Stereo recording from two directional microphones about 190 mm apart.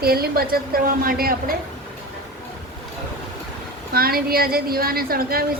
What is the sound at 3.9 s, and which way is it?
A woman's voice, 50° right (ahead or behind).